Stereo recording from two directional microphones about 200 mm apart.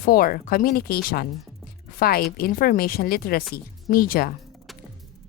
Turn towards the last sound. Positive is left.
turn(degrees=45)  # may be behind; listen again after turning